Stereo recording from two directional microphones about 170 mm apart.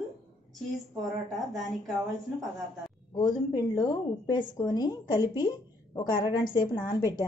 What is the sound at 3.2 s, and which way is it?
A woman's voice, 25° left (ahead or behind).